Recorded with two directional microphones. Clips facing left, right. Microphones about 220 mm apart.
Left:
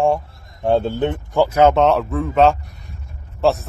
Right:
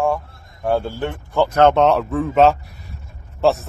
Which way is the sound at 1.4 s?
10° left (ahead or behind).